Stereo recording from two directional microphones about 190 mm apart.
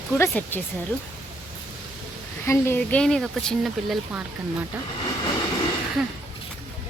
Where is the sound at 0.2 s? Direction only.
10° left (ahead or behind).